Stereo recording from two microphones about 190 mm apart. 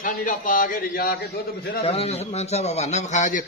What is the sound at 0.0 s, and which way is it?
A man's voice, 45° left (ahead or behind).